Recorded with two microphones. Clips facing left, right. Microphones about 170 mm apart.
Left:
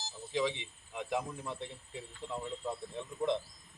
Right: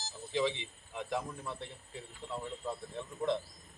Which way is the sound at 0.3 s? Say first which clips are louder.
Right 1 dB; 10° left (ahead or behind).